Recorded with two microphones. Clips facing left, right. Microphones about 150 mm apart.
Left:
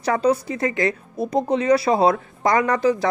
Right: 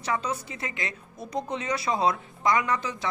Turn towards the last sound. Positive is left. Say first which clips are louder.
# left 9 dB
turn(degrees=35)  # may be behind; listen again after turning